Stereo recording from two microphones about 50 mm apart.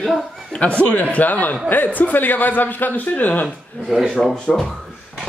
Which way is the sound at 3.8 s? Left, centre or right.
Centre.